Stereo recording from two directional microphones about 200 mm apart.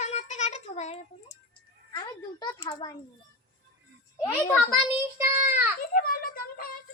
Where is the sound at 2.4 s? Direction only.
20° left (ahead or behind).